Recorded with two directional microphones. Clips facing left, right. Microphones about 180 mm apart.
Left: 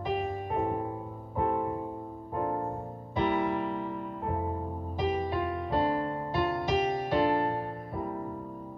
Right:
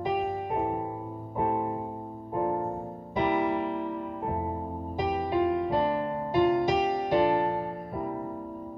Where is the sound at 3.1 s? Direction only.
15° right (ahead or behind).